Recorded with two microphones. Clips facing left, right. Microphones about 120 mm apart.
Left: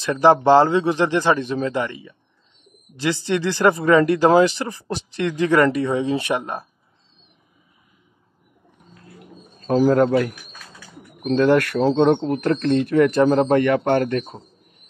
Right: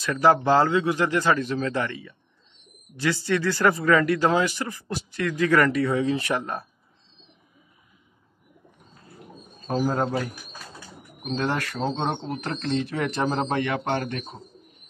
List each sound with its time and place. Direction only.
0.0 s speech: 30° left (ahead or behind)
9.7 s a man's voice: 80° left; by 14.2 s 50° left (ahead or behind)